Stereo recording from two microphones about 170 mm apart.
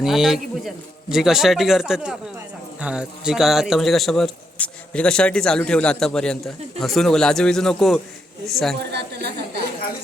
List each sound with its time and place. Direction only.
0.0 s a man's voice: centre (ahead or behind)
8.7 s a woman's voice: 80° right